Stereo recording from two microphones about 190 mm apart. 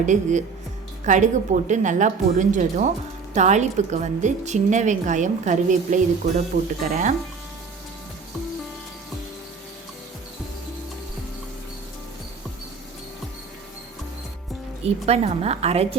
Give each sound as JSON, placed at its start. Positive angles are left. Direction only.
{"t": 0.0, "sound": "a woman's voice", "side_deg": -40}
{"t": 14.8, "sound": "a woman's voice", "side_deg": -35}